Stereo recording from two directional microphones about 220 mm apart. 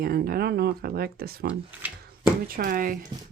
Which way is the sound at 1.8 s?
5° right (ahead or behind).